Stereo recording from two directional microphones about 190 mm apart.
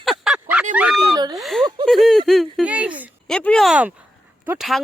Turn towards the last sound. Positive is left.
turn(degrees=0)  # may be behind; listen again after turning